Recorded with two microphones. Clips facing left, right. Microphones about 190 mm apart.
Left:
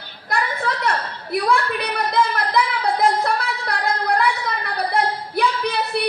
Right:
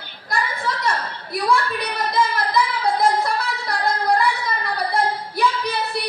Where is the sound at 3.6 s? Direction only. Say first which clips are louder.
Right 3 dB; 60° left (ahead or behind).